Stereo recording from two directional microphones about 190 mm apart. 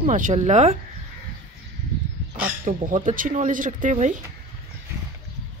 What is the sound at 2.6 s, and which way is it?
Speech, 45° right (ahead or behind).